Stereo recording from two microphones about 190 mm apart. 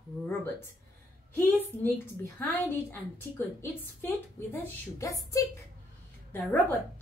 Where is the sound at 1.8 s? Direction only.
10° left (ahead or behind).